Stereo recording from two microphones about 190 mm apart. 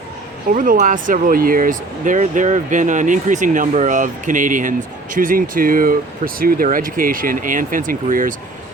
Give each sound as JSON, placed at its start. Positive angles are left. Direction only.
{"t": 0.5, "sound": "speech", "side_deg": -45}